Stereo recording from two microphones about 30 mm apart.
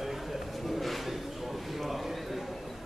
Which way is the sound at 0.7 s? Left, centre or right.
Centre.